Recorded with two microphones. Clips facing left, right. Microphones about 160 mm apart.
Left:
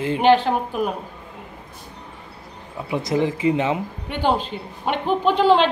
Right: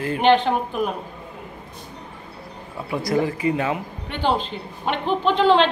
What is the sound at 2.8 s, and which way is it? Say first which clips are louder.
Speech: left 1 dB; 20° left (ahead or behind).